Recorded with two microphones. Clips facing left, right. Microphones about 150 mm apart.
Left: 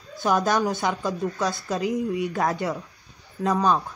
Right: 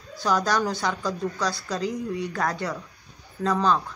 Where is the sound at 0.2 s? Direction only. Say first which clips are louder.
Left 2 dB; 20° left (ahead or behind).